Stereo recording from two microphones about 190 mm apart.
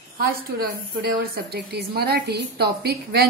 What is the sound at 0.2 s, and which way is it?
A woman's voice, 50° right (ahead or behind).